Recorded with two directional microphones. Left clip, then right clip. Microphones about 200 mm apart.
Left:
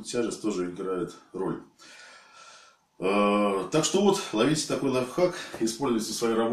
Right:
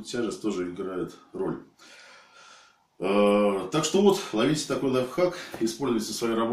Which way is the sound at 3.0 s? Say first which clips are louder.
Right 2 dB; 5° left (ahead or behind).